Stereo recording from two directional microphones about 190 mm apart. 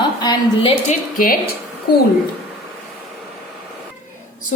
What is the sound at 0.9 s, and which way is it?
A woman's voice, 50° left (ahead or behind).